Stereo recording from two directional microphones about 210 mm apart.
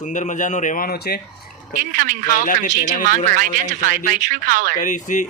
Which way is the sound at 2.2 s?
40° left (ahead or behind).